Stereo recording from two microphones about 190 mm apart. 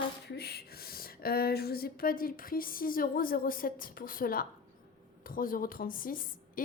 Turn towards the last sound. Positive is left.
turn(degrees=45)  # may be behind; listen again after turning